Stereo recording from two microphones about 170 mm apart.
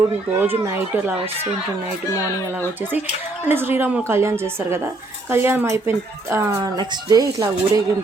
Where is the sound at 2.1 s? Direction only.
20° left (ahead or behind).